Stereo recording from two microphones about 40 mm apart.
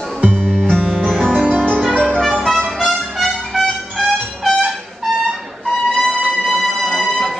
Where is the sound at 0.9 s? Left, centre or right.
Centre.